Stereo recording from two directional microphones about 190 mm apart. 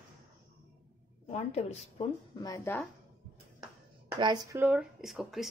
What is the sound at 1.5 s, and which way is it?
Speech, 35° left (ahead or behind).